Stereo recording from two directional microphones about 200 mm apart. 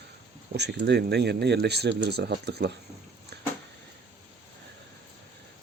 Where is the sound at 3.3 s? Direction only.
55° right (ahead or behind).